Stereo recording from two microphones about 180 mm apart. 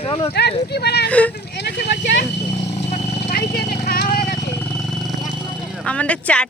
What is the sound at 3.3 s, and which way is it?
Vehicle, 60° left (ahead or behind).